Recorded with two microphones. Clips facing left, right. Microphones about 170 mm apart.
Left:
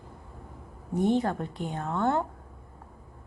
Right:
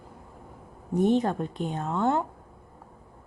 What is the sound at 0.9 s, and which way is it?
A woman's voice, 20° right (ahead or behind).